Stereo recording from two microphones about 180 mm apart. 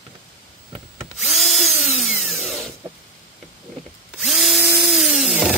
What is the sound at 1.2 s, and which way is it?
Drill, centre (ahead or behind).